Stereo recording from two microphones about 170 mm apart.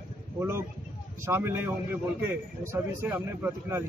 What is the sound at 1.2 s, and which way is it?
A man's voice, 15° right (ahead or behind).